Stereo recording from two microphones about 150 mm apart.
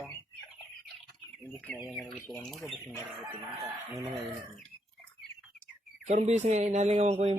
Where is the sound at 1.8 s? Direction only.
5° right (ahead or behind).